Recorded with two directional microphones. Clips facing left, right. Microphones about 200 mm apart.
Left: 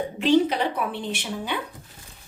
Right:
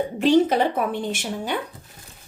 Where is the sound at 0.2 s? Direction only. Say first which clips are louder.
Right 2 dB; 45° right (ahead or behind).